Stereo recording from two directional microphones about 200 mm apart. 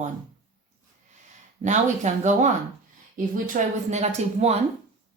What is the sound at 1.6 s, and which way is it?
Speech, 35° right (ahead or behind).